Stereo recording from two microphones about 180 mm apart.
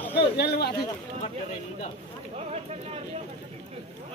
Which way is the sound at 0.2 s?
65° left (ahead or behind).